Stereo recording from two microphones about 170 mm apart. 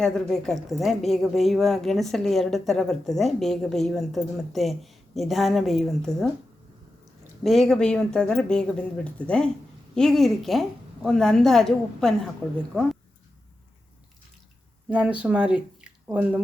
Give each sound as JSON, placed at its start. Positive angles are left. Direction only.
{"t": 0.0, "sound": "a woman's voice", "side_deg": 5}
{"t": 7.4, "sound": "a woman's voice", "side_deg": 0}
{"t": 14.8, "sound": "speech", "side_deg": -10}